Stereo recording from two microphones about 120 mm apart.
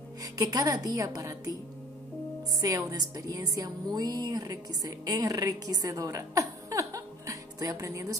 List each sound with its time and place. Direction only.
0.2 s a woman's voice: 30° right (ahead or behind)
2.6 s a woman's voice: 30° right (ahead or behind)